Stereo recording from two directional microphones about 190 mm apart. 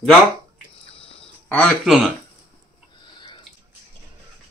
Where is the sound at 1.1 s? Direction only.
5° left (ahead or behind).